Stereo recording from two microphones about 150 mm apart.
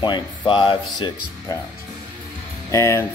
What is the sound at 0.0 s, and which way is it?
Speech, 30° left (ahead or behind).